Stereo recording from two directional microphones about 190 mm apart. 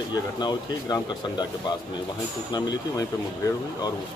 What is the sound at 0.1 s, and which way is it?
Speech, 20° left (ahead or behind).